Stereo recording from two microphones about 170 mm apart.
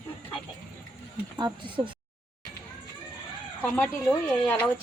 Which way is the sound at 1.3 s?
25° right (ahead or behind).